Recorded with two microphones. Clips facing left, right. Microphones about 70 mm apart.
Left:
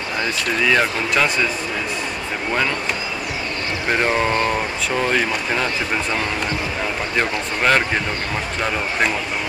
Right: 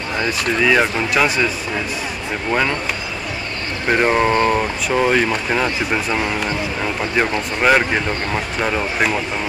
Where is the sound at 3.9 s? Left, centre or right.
Centre.